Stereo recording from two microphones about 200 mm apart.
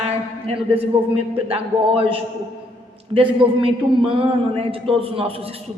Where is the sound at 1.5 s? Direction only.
30° right (ahead or behind).